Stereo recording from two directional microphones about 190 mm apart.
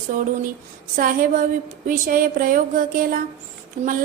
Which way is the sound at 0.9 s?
45° right (ahead or behind).